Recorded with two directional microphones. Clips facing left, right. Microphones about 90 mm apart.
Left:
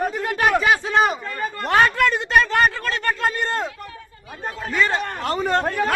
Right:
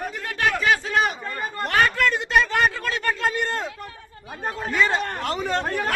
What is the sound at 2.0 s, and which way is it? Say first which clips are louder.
Speech: left 2 dB; centre (ahead or behind).